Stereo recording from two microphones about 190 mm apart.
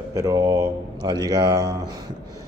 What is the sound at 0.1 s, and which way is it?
A man's voice, 20° right (ahead or behind).